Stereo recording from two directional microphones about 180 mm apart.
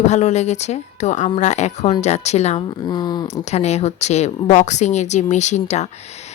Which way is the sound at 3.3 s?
35° left (ahead or behind).